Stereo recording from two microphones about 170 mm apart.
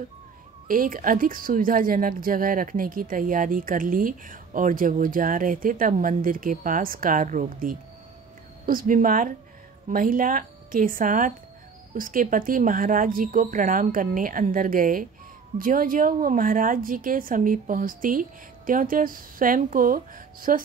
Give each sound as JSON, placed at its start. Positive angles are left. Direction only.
{"t": 0.7, "sound": "a woman's voice", "side_deg": -55}